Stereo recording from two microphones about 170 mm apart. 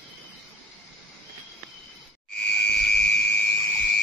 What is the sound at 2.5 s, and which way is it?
Frog, 75° left (ahead or behind).